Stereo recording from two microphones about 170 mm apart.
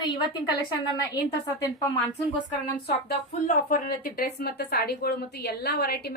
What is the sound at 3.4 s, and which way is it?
A woman's voice, 55° left (ahead or behind).